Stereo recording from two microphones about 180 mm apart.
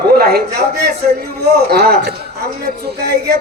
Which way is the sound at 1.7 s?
60° right (ahead or behind).